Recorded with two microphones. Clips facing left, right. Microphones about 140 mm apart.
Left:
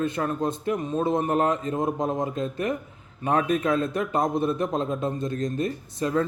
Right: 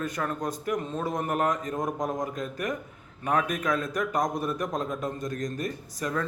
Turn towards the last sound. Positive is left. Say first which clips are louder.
# left 6 dB
turn(degrees=25)  # may be behind; listen again after turning